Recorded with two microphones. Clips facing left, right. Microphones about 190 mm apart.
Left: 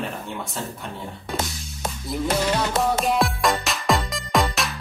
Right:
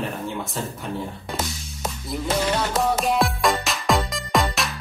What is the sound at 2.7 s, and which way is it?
Music, centre (ahead or behind).